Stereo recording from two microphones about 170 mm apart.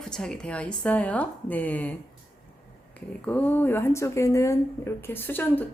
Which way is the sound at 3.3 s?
10° left (ahead or behind).